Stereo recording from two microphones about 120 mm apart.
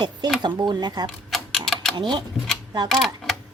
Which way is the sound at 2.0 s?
40° right (ahead or behind).